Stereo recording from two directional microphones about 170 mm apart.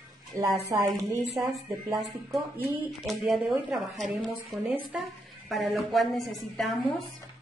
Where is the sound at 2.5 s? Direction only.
Centre (ahead or behind).